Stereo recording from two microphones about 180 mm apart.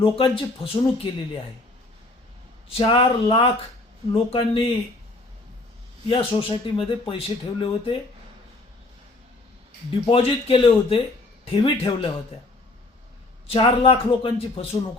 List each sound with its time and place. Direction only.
0.0 s speech: 30° left (ahead or behind)
2.6 s speech: 30° left (ahead or behind)
6.1 s speech: 30° left (ahead or behind)
9.9 s a man's voice: 30° left (ahead or behind)
13.5 s a man's voice: 30° left (ahead or behind)